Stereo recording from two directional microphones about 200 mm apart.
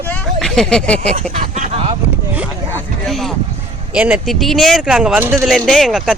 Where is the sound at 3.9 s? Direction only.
5° right (ahead or behind).